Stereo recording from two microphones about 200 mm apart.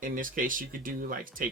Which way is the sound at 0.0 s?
40° right (ahead or behind).